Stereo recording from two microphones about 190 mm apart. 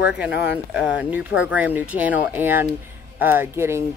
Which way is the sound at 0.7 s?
5° right (ahead or behind).